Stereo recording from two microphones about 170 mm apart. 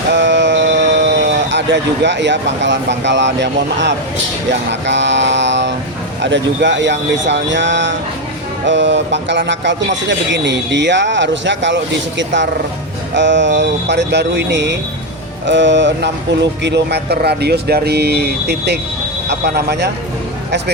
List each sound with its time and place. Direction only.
0.1 s speech: 90° right; by 19.9 s 75° right (ahead or behind)